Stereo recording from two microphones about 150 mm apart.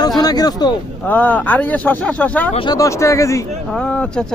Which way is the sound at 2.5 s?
35° left (ahead or behind).